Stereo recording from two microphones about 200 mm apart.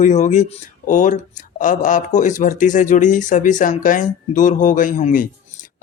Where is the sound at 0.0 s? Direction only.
35° left (ahead or behind).